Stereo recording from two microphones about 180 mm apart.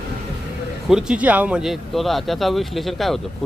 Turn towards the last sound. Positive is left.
turn(degrees=0)  # may be behind; listen again after turning